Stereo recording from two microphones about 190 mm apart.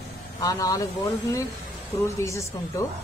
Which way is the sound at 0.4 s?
15° left (ahead or behind).